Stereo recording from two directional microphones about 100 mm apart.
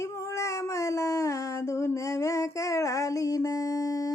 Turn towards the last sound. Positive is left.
turn(degrees=35)  # may be behind; listen again after turning